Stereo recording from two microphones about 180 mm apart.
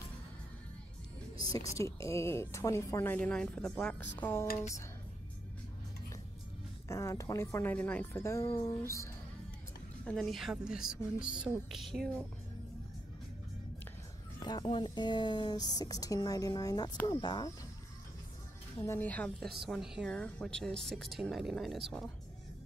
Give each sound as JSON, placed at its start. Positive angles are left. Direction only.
{"t": 1.6, "sound": "speech", "side_deg": 15}
{"t": 6.9, "sound": "speech", "side_deg": 15}
{"t": 10.0, "sound": "speech", "side_deg": 5}
{"t": 14.4, "sound": "speech", "side_deg": 25}
{"t": 18.9, "sound": "speech", "side_deg": 10}